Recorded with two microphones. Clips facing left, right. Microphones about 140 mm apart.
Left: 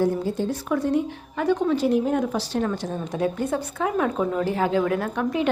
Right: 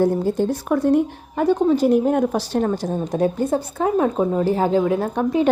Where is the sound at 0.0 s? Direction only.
50° right (ahead or behind); by 5.0 s 25° right (ahead or behind).